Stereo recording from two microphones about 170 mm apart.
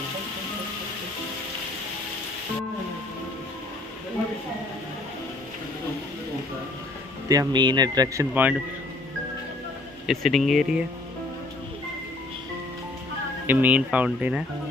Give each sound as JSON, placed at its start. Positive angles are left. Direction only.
{"t": 7.2, "sound": "speech", "side_deg": -25}
{"t": 10.0, "sound": "speech", "side_deg": 0}
{"t": 13.5, "sound": "speech", "side_deg": -10}